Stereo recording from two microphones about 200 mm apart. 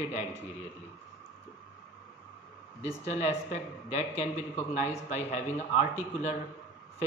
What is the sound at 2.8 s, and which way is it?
Speech, 35° left (ahead or behind).